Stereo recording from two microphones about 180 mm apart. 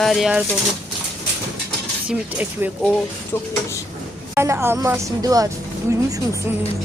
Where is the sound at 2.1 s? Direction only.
10° right (ahead or behind).